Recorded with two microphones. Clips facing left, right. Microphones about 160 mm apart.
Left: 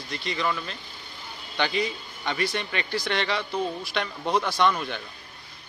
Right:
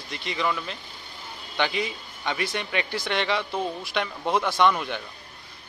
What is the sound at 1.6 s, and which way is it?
A man's voice, 15° right (ahead or behind).